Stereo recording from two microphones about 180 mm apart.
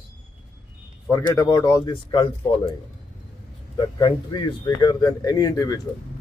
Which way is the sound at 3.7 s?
25° left (ahead or behind).